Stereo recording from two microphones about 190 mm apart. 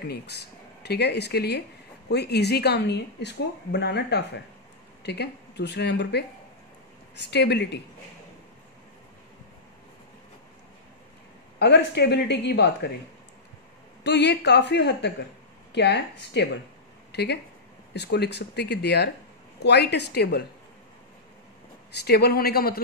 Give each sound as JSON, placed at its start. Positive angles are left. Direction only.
{"t": 0.0, "sound": "speech", "side_deg": 60}
{"t": 11.6, "sound": "speech", "side_deg": 60}
{"t": 14.0, "sound": "speech", "side_deg": 65}
{"t": 21.9, "sound": "speech", "side_deg": 55}